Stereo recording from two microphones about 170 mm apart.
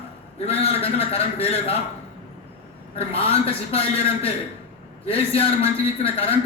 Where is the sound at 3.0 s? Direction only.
35° left (ahead or behind).